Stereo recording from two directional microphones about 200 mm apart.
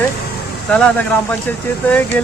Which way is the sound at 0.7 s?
5° left (ahead or behind).